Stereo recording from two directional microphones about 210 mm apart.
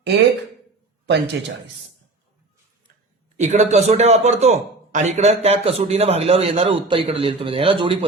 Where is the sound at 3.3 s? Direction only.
35° right (ahead or behind).